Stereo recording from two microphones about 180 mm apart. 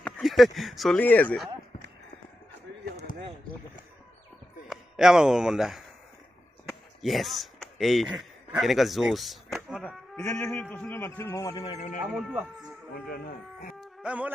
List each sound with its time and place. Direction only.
0.0 s speech: centre (ahead or behind)
3.1 s a sound: 50° left (ahead or behind)
4.6 s speech: 5° right (ahead or behind)
7.0 s speech: centre (ahead or behind); by 11.7 s 20° left (ahead or behind)
11.7 s speech: 45° left (ahead or behind)
12.2 s speech: centre (ahead or behind)
12.9 s speech: 55° left (ahead or behind)
13.7 s music: 5° right (ahead or behind)